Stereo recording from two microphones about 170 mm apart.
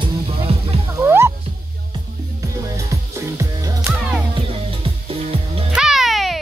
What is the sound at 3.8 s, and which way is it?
Music, 10° right (ahead or behind).